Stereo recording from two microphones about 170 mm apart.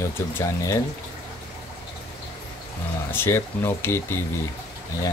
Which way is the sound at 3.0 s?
15° left (ahead or behind).